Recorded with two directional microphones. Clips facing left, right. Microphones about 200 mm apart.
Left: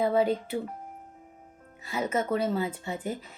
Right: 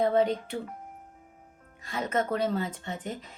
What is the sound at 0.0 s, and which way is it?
Speech, 5° left (ahead or behind).